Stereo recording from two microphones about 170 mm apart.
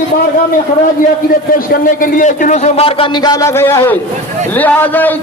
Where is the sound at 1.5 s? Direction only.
55° left (ahead or behind).